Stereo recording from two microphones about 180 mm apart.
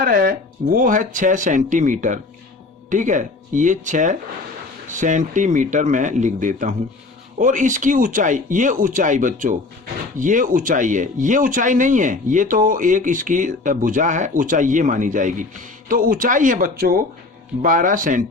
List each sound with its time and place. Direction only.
0.0 s speech: 50° right (ahead or behind)